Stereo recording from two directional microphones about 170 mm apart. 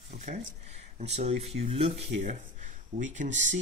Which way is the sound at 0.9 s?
40° right (ahead or behind).